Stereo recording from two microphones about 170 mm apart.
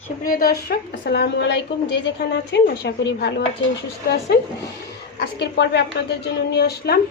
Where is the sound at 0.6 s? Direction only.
75° left (ahead or behind).